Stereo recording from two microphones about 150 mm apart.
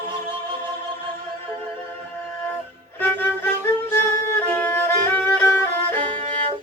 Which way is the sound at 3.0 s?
15° left (ahead or behind).